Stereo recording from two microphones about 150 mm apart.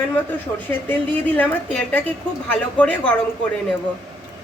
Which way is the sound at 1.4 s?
10° left (ahead or behind).